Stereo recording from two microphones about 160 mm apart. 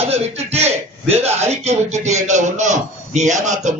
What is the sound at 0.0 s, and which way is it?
A man's voice, 40° right (ahead or behind).